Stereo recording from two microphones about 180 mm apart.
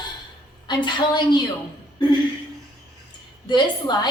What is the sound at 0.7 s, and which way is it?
Speech, 25° left (ahead or behind).